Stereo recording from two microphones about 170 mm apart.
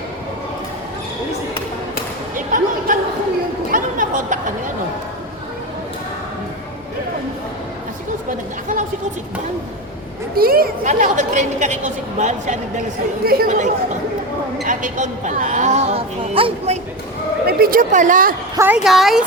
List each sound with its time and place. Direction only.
2.3 s a sound: 50° right (ahead or behind)
3.7 s chatter: 50° right (ahead or behind)
8.3 s a sound: 50° right (ahead or behind)
10.3 s a woman's voice: 60° right (ahead or behind); by 12.8 s 45° right (ahead or behind)
13.2 s a woman's voice: 60° right (ahead or behind)
13.5 s speech: 45° right (ahead or behind)
17.4 s a woman's voice: 60° right (ahead or behind)
18.5 s a woman's voice: 10° right (ahead or behind)